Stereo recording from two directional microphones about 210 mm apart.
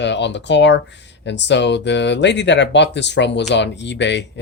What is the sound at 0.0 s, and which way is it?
Speech, 55° left (ahead or behind).